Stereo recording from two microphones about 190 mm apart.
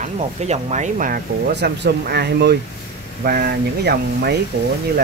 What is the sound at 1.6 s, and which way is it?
Speech, 60° right (ahead or behind).